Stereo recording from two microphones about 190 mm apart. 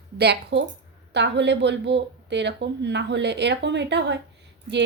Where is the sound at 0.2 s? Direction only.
60° right (ahead or behind).